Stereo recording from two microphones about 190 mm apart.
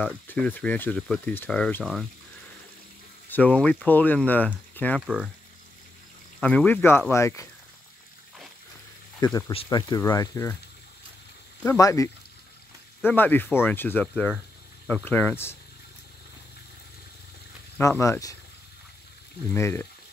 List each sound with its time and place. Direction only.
0.0 s speech: 5° left (ahead or behind)
3.3 s speech: 10° left (ahead or behind)
5.0 s speech: 5° right (ahead or behind)
6.4 s speech: 10° left (ahead or behind)
9.5 s speech: 25° left (ahead or behind)
11.6 s speech: 15° left (ahead or behind)
17.7 s speech: 15° left (ahead or behind)
19.5 s speech: 15° left (ahead or behind)